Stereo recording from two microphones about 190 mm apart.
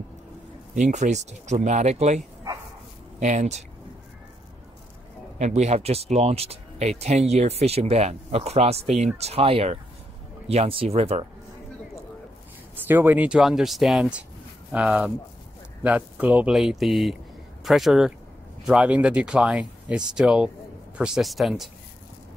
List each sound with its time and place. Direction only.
0.7 s speech: 40° right (ahead or behind)
5.4 s speech: 35° right (ahead or behind)
12.7 s speech: 10° right (ahead or behind)